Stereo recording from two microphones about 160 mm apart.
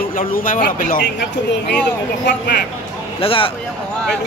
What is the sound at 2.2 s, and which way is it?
Speech, 90° left.